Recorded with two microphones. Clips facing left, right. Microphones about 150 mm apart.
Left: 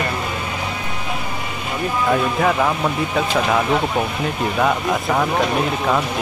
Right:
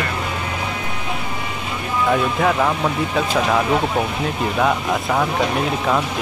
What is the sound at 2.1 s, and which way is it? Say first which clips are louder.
Speech: even; centre (ahead or behind).